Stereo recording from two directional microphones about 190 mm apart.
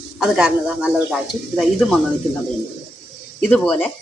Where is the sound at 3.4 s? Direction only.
5° left (ahead or behind).